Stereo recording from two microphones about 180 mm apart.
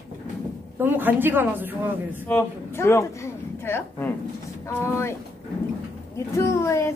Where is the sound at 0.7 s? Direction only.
10° right (ahead or behind).